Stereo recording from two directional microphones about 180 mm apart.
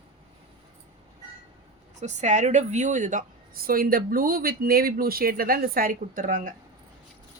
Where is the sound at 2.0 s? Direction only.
40° right (ahead or behind).